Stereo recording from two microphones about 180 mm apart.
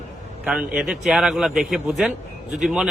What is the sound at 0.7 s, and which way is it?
A man's voice, 5° right (ahead or behind).